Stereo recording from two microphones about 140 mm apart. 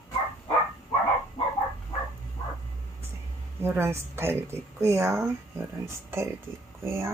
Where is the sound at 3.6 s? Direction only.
15° right (ahead or behind).